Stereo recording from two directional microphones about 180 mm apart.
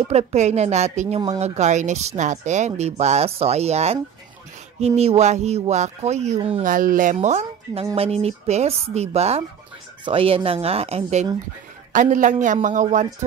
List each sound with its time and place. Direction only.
0.0 s speech: 35° right (ahead or behind)
6.6 s speech: 50° right (ahead or behind)